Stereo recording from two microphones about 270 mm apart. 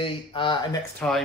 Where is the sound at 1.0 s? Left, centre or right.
Centre.